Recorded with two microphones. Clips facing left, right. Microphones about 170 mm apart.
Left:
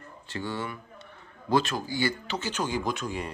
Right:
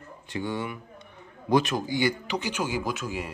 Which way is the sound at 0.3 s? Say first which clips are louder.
Right 3 dB; 15° right (ahead or behind).